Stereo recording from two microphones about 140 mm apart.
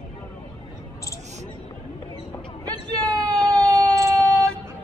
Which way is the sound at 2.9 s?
25° right (ahead or behind).